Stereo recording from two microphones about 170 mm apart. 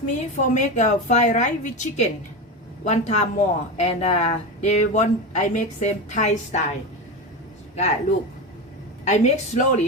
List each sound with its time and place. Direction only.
0.0 s speech: 45° left (ahead or behind)
9.0 s speech: 40° left (ahead or behind)